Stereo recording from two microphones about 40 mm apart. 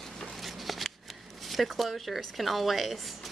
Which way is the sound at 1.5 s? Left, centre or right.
Centre.